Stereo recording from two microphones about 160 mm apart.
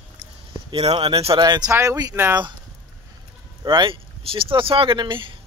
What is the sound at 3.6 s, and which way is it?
Speech, 30° right (ahead or behind).